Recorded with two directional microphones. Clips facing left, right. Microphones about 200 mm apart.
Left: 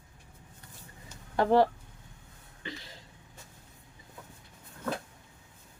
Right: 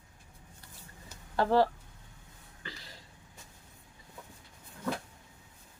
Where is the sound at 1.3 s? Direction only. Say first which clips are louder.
Left 2 dB; 20° left (ahead or behind).